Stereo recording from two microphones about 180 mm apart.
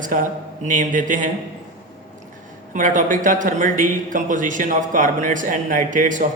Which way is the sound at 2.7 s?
45° right (ahead or behind).